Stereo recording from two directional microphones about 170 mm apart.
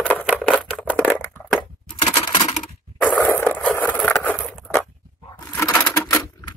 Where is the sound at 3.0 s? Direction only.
10° left (ahead or behind).